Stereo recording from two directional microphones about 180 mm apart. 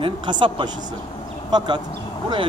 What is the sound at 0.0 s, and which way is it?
Speech, 25° right (ahead or behind).